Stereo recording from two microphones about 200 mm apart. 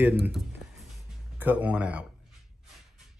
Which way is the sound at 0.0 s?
10° right (ahead or behind).